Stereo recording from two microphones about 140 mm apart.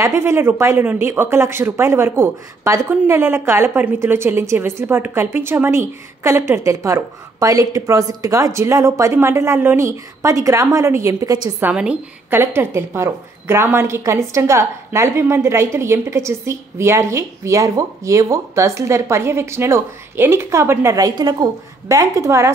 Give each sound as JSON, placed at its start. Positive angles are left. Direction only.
{"t": 0.0, "sound": "speech", "side_deg": -20}
{"t": 11.6, "sound": "speech", "side_deg": -5}